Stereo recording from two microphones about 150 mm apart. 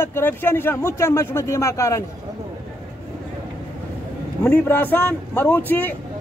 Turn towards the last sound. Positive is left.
turn(degrees=15)  # may be behind; listen again after turning